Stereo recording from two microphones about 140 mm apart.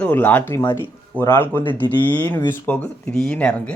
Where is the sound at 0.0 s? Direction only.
10° left (ahead or behind).